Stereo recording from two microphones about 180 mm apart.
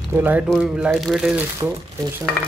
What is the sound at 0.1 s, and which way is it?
Speech, 10° right (ahead or behind).